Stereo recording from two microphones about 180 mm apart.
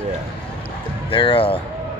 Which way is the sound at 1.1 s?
30° left (ahead or behind).